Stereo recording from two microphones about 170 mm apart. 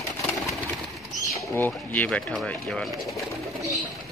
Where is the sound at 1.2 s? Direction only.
10° left (ahead or behind).